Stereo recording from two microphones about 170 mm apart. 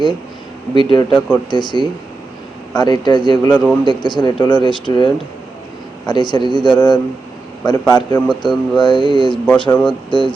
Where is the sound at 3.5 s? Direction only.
Centre (ahead or behind).